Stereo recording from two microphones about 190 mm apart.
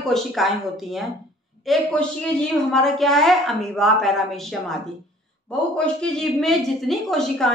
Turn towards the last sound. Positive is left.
turn(degrees=0)  # may be behind; listen again after turning